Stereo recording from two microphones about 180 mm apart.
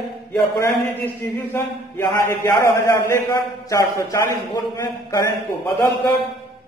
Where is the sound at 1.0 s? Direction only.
10° left (ahead or behind).